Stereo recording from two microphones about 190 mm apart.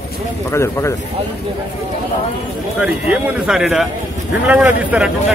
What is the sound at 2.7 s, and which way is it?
Speech, 5° right (ahead or behind).